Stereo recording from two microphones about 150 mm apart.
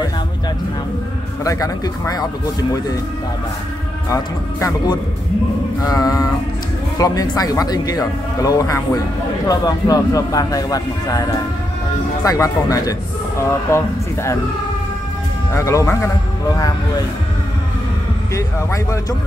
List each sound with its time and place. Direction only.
1.4 s speech: 25° left (ahead or behind)
4.1 s speech: 20° left (ahead or behind)
12.3 s speech: 25° left (ahead or behind)
15.5 s speech: 20° left (ahead or behind)
18.3 s speech: 20° left (ahead or behind)